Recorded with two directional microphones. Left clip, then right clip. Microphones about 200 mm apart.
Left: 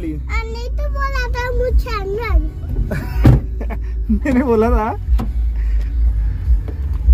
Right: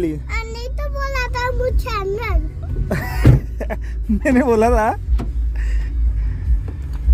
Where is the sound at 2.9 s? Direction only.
50° right (ahead or behind).